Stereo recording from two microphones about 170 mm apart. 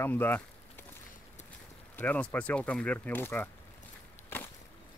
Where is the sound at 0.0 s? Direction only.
10° left (ahead or behind).